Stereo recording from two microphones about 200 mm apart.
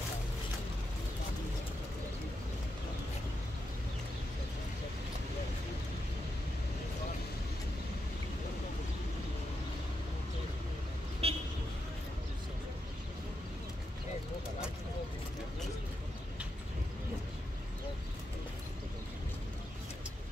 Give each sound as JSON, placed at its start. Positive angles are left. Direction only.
{"t": 11.2, "sound": "vehicle", "side_deg": -30}